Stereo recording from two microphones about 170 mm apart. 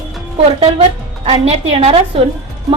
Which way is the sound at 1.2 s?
35° right (ahead or behind).